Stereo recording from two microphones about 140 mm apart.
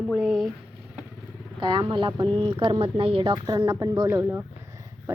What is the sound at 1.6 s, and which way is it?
Speech, 35° right (ahead or behind).